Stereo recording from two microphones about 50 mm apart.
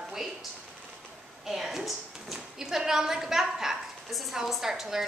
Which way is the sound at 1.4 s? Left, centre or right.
Centre.